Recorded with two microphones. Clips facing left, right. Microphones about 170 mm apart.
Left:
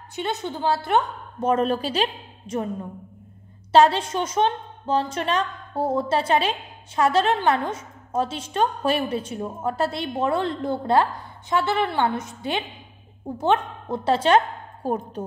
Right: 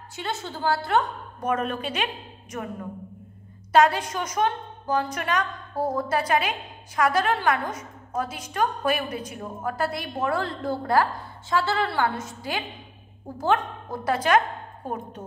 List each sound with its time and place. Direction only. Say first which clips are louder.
0.1 s a woman's voice: left 5 dB; 20° left (ahead or behind)
3.7 s a woman's voice: left 3 dB; 30° left (ahead or behind)